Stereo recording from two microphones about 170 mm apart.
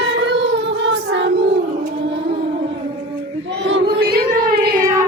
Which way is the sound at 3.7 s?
70° right (ahead or behind).